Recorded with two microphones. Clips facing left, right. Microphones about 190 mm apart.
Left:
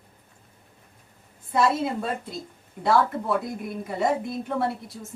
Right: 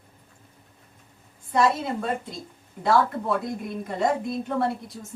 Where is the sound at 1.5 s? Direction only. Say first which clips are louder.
Even; centre (ahead or behind).